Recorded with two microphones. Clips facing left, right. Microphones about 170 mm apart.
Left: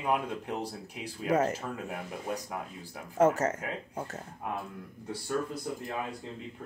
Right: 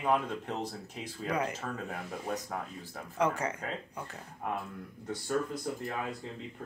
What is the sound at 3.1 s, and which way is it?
Speech, 45° left (ahead or behind).